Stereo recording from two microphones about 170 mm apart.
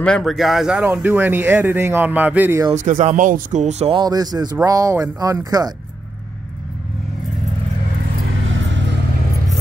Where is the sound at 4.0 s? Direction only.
25° right (ahead or behind).